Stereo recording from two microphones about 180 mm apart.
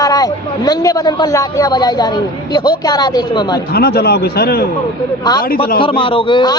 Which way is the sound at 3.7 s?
60° left (ahead or behind).